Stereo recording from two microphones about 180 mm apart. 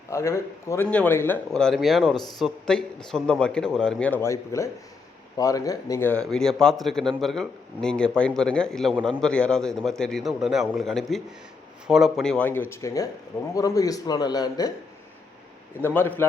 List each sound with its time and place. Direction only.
0.1 s a man's voice: 15° left (ahead or behind)
15.8 s speech: 10° left (ahead or behind)